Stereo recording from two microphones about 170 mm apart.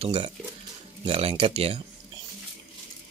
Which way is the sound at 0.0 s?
35° right (ahead or behind).